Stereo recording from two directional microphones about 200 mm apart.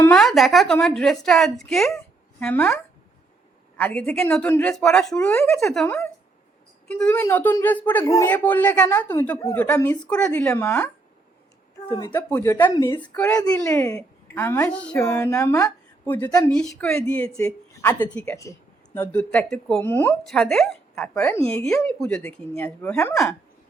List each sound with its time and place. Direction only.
0.1 s a man's voice: centre (ahead or behind)
5.2 s a man's voice: 10° left (ahead or behind)
5.5 s speech: centre (ahead or behind)
5.8 s a man's voice: 10° left (ahead or behind)
13.1 s a man's voice: 5° left (ahead or behind)